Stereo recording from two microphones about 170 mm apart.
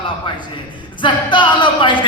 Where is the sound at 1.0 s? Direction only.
30° left (ahead or behind).